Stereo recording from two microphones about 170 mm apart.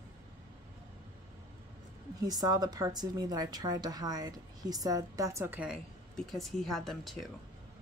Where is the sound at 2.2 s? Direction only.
20° right (ahead or behind).